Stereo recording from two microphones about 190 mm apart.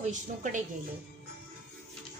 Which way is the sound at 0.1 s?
40° right (ahead or behind).